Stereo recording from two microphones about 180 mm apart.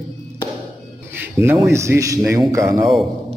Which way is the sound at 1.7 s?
15° right (ahead or behind).